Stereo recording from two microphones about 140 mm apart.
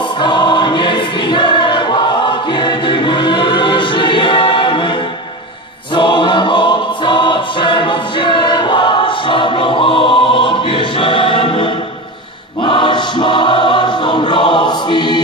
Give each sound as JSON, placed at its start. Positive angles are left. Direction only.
{"t": 0.2, "sound": "choir", "side_deg": 35}
{"t": 5.9, "sound": "choir", "side_deg": 35}